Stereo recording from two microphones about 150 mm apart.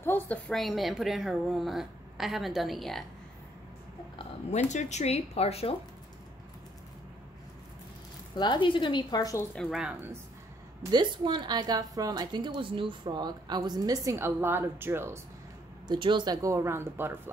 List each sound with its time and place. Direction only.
0.0 s speech: 15° left (ahead or behind)
0.5 s a woman's voice: centre (ahead or behind)
4.5 s speech: 50° left (ahead or behind)
8.4 s a woman's voice: 30° left (ahead or behind)
9.6 s a woman's voice: 5° right (ahead or behind)
10.8 s a woman's voice: 30° right (ahead or behind)
15.9 s a woman's voice: 30° right (ahead or behind); by 17.2 s 15° right (ahead or behind)